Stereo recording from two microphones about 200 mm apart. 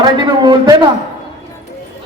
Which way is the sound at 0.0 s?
20° right (ahead or behind).